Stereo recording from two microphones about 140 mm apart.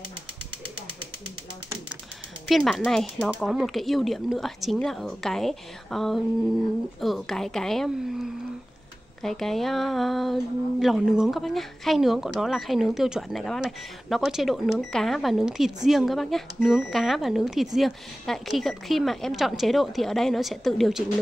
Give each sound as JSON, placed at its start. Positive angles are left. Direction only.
{"t": 2.4, "sound": "speech", "side_deg": 5}